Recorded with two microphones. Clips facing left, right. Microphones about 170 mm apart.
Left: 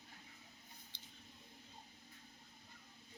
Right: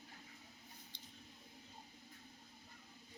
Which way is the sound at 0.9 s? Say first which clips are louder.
Right 2 dB; centre (ahead or behind).